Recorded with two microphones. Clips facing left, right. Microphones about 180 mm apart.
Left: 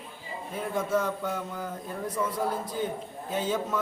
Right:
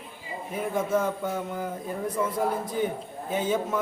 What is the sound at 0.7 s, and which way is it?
Speech, 25° right (ahead or behind).